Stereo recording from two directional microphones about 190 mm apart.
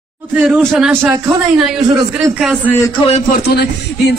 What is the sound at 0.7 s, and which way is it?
Speech, 5° right (ahead or behind).